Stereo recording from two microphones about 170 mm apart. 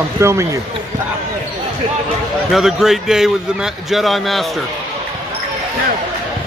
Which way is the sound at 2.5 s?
Centre (ahead or behind).